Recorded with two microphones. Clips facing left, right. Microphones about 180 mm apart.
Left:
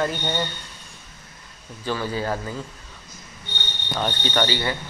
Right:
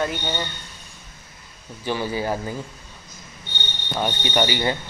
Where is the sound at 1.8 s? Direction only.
15° right (ahead or behind).